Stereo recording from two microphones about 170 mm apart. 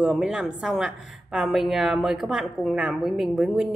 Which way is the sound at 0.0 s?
5° right (ahead or behind).